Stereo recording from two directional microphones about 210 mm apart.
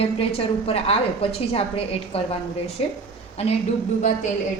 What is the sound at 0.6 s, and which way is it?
A woman's voice, 30° left (ahead or behind).